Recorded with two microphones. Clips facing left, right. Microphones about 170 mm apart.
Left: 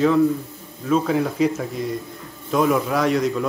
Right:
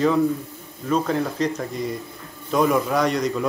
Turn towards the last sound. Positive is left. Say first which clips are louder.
# left 2 dB
turn(degrees=0)  # may be behind; listen again after turning